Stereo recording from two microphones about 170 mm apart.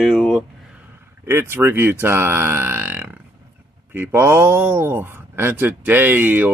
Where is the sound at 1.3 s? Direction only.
15° right (ahead or behind).